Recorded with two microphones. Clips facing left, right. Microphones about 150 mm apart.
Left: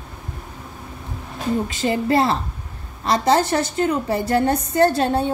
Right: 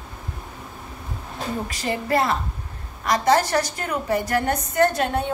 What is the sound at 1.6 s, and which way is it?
A woman's voice, 25° left (ahead or behind).